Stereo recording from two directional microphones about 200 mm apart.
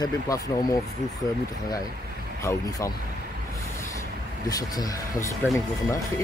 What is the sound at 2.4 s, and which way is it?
Speech, 15° left (ahead or behind).